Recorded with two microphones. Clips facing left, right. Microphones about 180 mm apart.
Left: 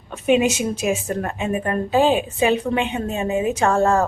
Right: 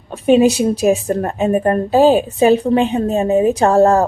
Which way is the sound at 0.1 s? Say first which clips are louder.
Right 6 dB; 35° right (ahead or behind).